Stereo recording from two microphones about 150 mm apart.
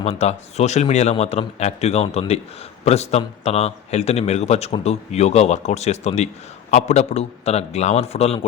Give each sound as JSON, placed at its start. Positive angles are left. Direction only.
{"t": 0.0, "sound": "a man's voice", "side_deg": 45}